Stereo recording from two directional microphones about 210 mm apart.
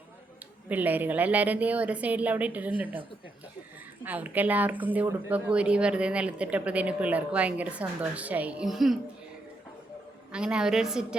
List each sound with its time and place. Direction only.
0.7 s speech: 10° right (ahead or behind)
4.0 s speech: 5° right (ahead or behind)
10.3 s a woman's voice: 5° right (ahead or behind)